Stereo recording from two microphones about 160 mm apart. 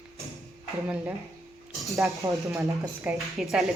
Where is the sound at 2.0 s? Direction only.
20° right (ahead or behind).